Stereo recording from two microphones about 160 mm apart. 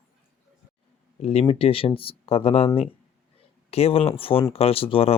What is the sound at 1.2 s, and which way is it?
Speech, 40° left (ahead or behind).